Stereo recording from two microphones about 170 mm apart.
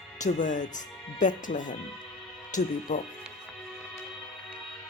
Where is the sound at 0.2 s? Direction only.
45° left (ahead or behind).